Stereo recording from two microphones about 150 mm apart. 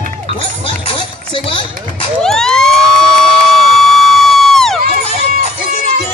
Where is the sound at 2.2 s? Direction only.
5° left (ahead or behind).